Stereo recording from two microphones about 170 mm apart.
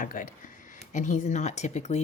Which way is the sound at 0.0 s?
50° left (ahead or behind).